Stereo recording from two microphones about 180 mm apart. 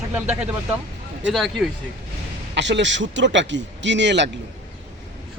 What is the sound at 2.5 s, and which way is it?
A man's voice, 75° right (ahead or behind).